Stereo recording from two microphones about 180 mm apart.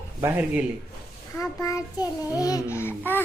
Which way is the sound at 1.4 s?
15° left (ahead or behind).